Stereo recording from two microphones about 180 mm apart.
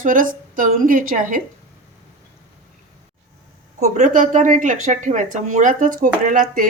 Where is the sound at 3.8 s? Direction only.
40° right (ahead or behind).